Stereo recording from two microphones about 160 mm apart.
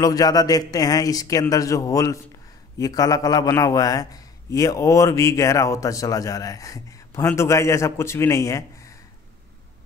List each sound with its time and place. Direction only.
0.0 s a man's voice: 25° left (ahead or behind)